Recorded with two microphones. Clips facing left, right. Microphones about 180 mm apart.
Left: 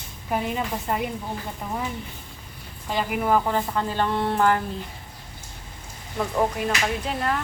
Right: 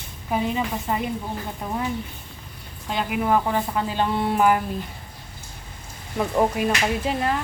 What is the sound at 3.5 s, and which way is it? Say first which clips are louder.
Speech: right 1 dB; 15° right (ahead or behind).